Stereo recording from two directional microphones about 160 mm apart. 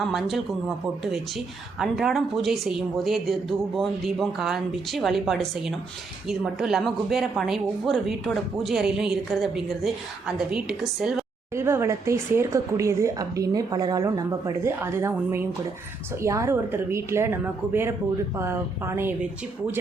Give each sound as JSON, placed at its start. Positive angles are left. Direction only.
{"t": 0.0, "sound": "speech", "side_deg": 0}
{"t": 1.8, "sound": "speech", "side_deg": 0}
{"t": 11.5, "sound": "speech", "side_deg": -15}